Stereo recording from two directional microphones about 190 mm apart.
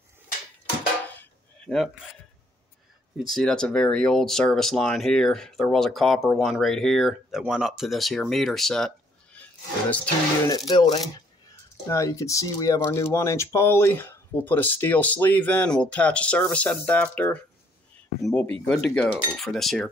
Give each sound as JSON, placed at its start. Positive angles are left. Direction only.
{"t": 1.2, "sound": "cutlery", "side_deg": 5}
{"t": 3.2, "sound": "speech", "side_deg": 0}
{"t": 10.7, "sound": "speech", "side_deg": 25}